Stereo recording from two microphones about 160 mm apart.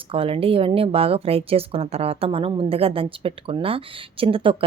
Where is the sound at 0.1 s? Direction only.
35° right (ahead or behind).